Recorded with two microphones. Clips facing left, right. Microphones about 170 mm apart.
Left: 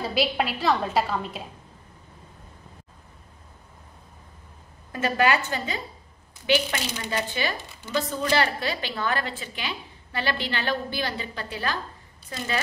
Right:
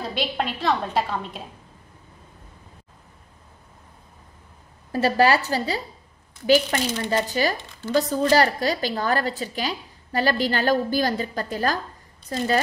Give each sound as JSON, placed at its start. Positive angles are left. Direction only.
{"t": 0.0, "sound": "a woman's voice", "side_deg": 5}
{"t": 4.9, "sound": "a woman's voice", "side_deg": -35}